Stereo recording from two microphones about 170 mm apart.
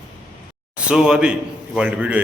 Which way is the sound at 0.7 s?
5° right (ahead or behind).